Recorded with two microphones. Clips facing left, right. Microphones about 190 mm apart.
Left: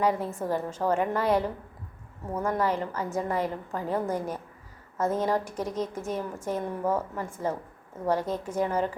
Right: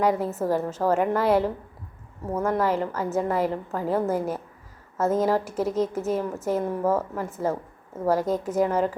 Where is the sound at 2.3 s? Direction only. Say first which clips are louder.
Right 3 dB; 45° right (ahead or behind).